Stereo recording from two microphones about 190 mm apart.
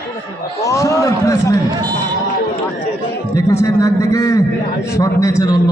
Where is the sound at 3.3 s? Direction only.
15° left (ahead or behind).